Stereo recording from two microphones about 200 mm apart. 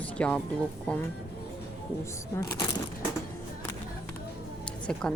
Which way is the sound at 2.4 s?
15° left (ahead or behind).